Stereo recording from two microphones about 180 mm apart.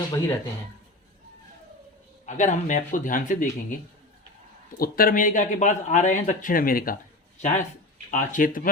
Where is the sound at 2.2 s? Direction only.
45° left (ahead or behind).